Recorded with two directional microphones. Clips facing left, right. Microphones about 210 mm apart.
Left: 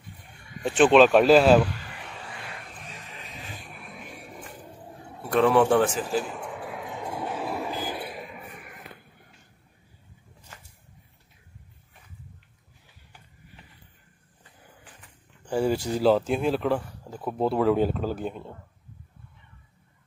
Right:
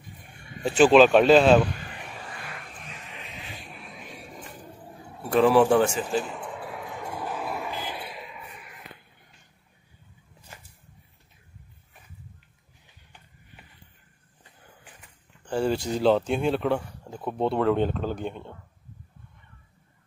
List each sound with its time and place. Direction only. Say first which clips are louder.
0.7 s speech: right 1 dB; centre (ahead or behind)
3.1 s vehicle: right 1 dB; 40° left (ahead or behind)
5.3 s speech: right 1 dB; centre (ahead or behind)
6.6 s a sound: left 1 dB; 15° left (ahead or behind)
7.3 s a sound: left 2 dB; 30° left (ahead or behind); by 9.0 s 50° left (ahead or behind)
15.4 s speech: left 1 dB; 10° left (ahead or behind)